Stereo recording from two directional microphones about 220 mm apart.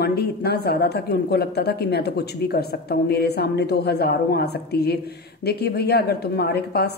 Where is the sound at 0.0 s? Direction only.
45° left (ahead or behind).